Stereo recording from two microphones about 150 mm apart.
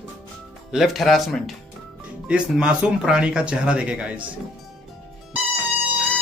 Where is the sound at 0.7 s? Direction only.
Centre (ahead or behind).